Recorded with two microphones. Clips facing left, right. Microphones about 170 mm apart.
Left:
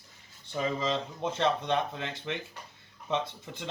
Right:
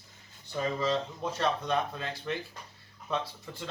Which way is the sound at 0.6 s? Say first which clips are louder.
Right 1 dB; 20° left (ahead or behind).